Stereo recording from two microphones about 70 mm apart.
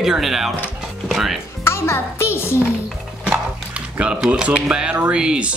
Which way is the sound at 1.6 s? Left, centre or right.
Left.